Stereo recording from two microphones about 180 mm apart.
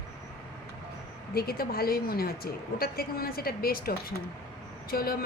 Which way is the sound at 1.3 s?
55° left (ahead or behind).